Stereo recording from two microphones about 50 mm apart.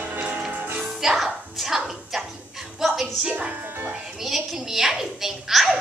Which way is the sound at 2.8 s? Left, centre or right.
Centre.